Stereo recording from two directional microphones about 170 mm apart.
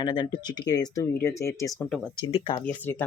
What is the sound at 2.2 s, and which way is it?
Speech, 30° left (ahead or behind).